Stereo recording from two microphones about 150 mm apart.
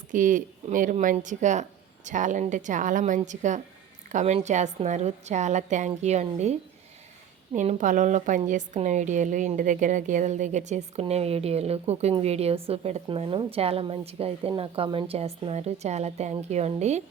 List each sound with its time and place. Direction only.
0.1 s a woman's voice: 60° right (ahead or behind)